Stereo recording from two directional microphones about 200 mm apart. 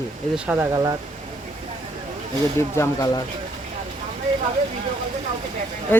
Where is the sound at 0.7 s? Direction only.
20° right (ahead or behind).